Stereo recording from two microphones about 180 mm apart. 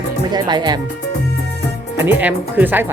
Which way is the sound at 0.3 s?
25° right (ahead or behind).